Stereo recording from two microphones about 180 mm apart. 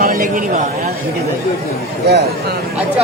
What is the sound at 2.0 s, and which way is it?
Speech, 65° right (ahead or behind).